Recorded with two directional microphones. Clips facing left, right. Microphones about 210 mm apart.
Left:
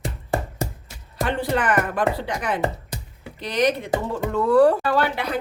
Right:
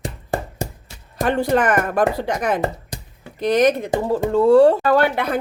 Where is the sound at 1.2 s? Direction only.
45° right (ahead or behind).